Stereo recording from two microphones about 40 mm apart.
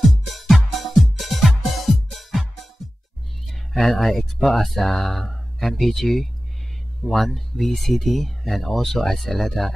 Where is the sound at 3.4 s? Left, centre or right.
Centre.